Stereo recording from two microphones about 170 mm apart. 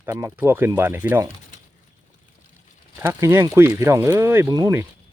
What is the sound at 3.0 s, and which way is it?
Speech, 15° right (ahead or behind).